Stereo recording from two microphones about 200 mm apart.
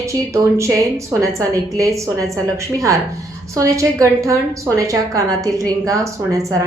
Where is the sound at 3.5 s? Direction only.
15° right (ahead or behind).